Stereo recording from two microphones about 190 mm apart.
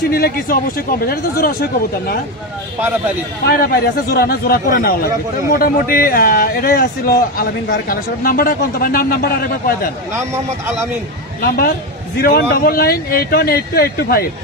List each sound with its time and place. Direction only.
0.1 s speech: 55° left (ahead or behind)
3.4 s speech: 55° left (ahead or behind)
11.4 s speech: 50° left (ahead or behind)